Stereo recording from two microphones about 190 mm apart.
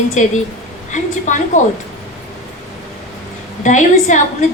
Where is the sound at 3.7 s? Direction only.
40° left (ahead or behind).